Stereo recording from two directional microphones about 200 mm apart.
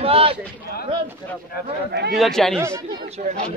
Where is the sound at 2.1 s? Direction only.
Centre (ahead or behind).